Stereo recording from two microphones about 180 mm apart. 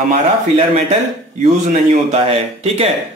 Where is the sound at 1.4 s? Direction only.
35° right (ahead or behind).